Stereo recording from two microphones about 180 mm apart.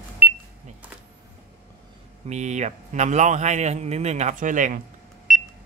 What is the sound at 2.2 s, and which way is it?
Speech, 40° right (ahead or behind).